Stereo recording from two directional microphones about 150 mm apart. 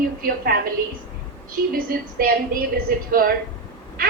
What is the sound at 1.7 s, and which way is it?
A woman's voice, 75° right (ahead or behind).